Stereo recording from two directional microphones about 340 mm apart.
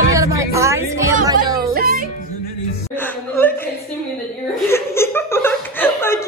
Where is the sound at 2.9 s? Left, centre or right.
Centre.